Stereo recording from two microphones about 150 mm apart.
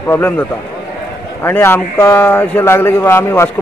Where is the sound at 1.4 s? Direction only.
15° left (ahead or behind).